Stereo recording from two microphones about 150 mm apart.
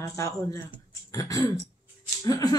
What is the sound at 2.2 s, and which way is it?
Speech, 25° left (ahead or behind).